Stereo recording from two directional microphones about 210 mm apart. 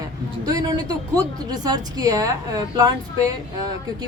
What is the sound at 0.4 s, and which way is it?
A woman's voice, 15° right (ahead or behind).